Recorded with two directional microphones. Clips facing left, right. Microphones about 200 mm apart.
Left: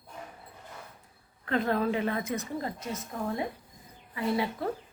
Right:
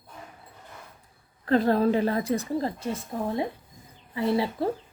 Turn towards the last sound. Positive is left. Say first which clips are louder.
# right 4 dB
turn(degrees=-30)  # may be behind; listen again after turning